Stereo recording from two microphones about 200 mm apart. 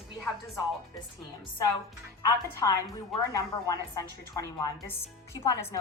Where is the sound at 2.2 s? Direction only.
15° left (ahead or behind).